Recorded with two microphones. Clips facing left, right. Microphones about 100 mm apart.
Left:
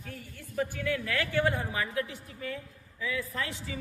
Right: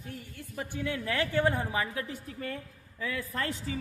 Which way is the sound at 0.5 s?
20° right (ahead or behind).